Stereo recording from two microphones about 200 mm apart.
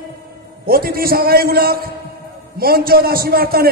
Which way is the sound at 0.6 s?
50° right (ahead or behind).